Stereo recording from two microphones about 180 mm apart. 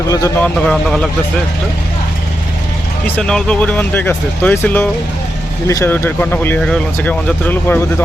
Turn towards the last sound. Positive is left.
turn(degrees=10)  # may be behind; listen again after turning